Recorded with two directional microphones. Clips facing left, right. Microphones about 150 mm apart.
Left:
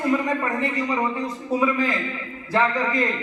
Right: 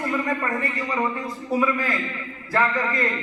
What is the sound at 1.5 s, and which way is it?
A man's voice, 20° left (ahead or behind).